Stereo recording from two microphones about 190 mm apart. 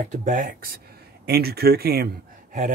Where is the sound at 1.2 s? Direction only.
55° right (ahead or behind).